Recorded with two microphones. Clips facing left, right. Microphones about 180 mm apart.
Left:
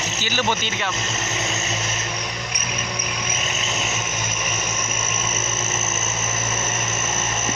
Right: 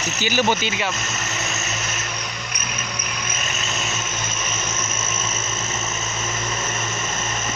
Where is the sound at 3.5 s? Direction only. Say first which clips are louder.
Left 1 dB; 15° left (ahead or behind).